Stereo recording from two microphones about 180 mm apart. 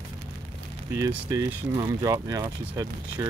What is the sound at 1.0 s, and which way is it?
Speech, 15° right (ahead or behind).